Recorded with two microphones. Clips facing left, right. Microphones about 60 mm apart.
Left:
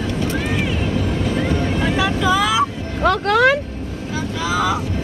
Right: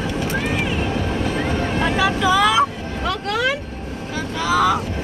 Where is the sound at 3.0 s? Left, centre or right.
Left.